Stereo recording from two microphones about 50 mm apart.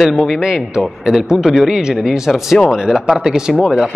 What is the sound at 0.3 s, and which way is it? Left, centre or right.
A man's voice, centre.